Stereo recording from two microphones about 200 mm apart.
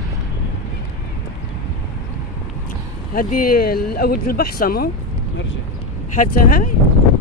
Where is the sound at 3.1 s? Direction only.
45° left (ahead or behind).